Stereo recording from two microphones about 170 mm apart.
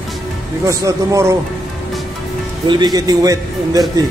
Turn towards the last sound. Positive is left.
turn(degrees=-20)  # may be behind; listen again after turning